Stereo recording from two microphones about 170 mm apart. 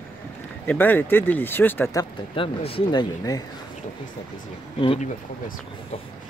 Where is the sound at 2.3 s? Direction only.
30° left (ahead or behind).